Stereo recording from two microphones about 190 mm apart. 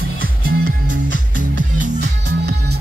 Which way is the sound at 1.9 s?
65° right (ahead or behind).